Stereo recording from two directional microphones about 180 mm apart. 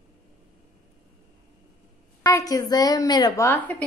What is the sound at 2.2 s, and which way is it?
A woman's voice, 20° left (ahead or behind).